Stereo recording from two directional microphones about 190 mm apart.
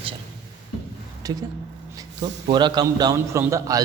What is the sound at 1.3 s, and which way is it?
A man's voice, 20° right (ahead or behind).